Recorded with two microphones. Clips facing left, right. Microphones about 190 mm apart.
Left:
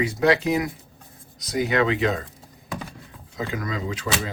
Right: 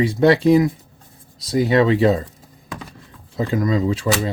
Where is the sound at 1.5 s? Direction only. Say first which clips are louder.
Right 6 dB; 30° right (ahead or behind).